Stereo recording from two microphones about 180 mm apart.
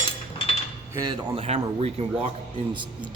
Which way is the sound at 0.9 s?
25° right (ahead or behind).